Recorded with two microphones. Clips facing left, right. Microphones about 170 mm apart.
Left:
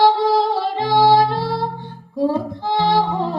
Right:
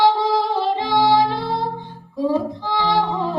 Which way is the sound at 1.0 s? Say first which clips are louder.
Left 2 dB; 55° left (ahead or behind).